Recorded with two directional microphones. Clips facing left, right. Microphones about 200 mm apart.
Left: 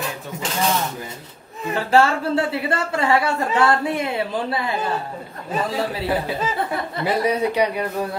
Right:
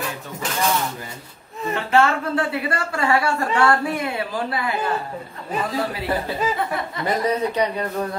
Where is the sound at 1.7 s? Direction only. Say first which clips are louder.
Left 2 dB; 35° left (ahead or behind).